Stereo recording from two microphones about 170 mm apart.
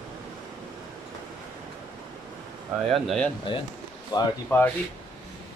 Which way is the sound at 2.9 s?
Centre (ahead or behind).